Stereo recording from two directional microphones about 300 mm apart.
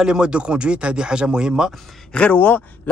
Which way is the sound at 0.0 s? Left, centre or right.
Centre.